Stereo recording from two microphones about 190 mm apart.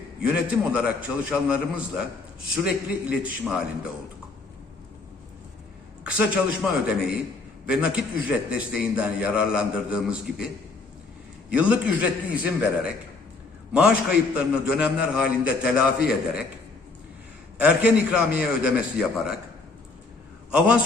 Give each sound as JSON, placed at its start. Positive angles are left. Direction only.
{"t": 0.2, "sound": "a man's voice", "side_deg": -5}
{"t": 6.1, "sound": "a man's voice", "side_deg": -5}
{"t": 11.5, "sound": "a man's voice", "side_deg": -5}
{"t": 17.6, "sound": "a man's voice", "side_deg": -5}
{"t": 20.5, "sound": "a man's voice", "side_deg": -5}